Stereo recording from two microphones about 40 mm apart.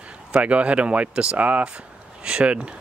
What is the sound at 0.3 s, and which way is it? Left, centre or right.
Speech, right.